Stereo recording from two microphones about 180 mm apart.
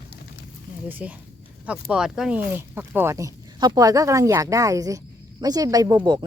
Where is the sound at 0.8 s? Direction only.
10° right (ahead or behind).